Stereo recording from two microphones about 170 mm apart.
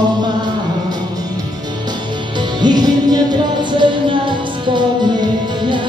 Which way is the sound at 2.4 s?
25° right (ahead or behind).